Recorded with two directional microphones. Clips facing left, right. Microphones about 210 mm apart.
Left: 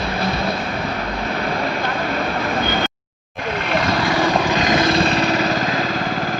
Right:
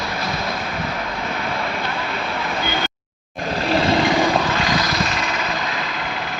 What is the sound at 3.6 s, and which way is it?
Vehicle, 30° right (ahead or behind).